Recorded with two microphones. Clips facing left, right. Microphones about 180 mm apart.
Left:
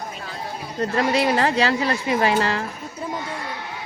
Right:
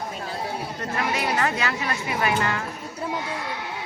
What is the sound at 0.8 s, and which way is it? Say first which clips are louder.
Speech: left 8 dB; 35° left (ahead or behind).